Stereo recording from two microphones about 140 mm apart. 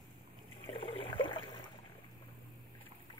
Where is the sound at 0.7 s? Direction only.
40° left (ahead or behind).